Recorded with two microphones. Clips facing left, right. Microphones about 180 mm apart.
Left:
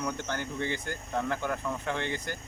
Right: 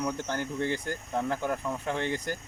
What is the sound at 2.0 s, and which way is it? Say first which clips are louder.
Speech: right 3 dB; 40° right (ahead or behind).